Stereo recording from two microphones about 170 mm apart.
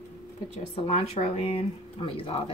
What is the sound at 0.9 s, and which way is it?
Speech, 40° left (ahead or behind).